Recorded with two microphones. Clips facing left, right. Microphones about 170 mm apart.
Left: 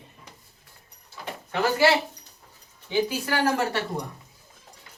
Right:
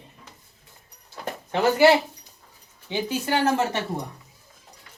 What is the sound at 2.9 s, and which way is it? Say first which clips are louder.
Speech: even; 20° right (ahead or behind).